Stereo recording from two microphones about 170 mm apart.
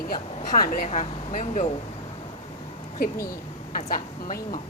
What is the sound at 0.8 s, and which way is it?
Speech, 45° left (ahead or behind).